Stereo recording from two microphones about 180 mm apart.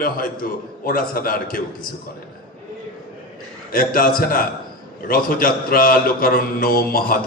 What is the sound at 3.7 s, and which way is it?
A man's voice, 55° left (ahead or behind).